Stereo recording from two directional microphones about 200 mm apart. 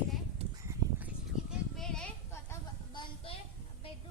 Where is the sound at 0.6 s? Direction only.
10° right (ahead or behind); by 3.0 s 10° left (ahead or behind).